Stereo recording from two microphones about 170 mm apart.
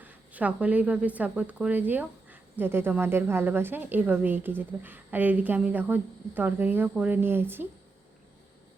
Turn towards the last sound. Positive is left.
turn(degrees=-10)  # may be behind; listen again after turning